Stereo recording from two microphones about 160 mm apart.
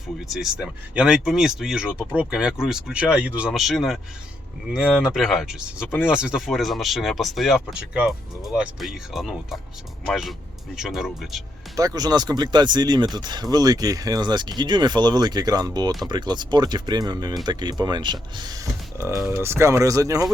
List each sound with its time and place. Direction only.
0.3 s speech: 5° right (ahead or behind)
11.8 s speech: 25° right (ahead or behind)